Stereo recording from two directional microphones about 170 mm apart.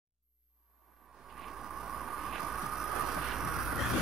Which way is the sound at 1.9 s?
Centre (ahead or behind).